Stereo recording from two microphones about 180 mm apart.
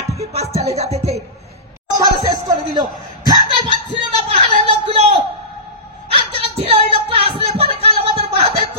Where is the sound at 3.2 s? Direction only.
25° right (ahead or behind).